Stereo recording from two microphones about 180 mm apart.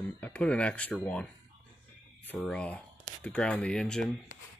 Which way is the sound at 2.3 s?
5° left (ahead or behind).